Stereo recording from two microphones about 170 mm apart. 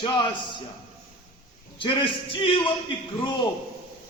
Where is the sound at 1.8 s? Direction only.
30° left (ahead or behind).